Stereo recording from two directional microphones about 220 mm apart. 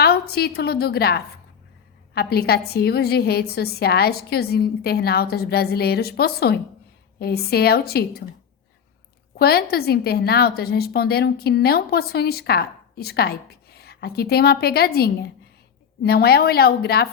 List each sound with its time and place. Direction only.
0.0 s a woman's voice: 45° left (ahead or behind)
9.4 s a woman's voice: 45° left (ahead or behind)